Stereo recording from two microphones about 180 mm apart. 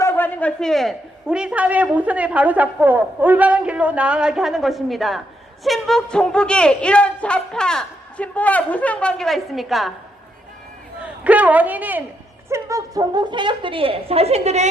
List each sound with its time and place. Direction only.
0.0 s a man's voice: 10° left (ahead or behind)
11.0 s a man's voice: 10° right (ahead or behind); by 14.7 s 40° right (ahead or behind)